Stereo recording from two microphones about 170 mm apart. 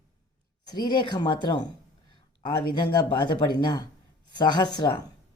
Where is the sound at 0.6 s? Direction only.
25° left (ahead or behind).